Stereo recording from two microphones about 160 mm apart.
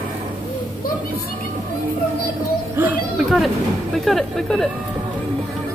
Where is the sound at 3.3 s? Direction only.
Centre (ahead or behind).